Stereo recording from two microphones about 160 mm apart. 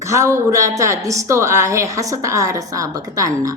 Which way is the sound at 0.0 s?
20° right (ahead or behind).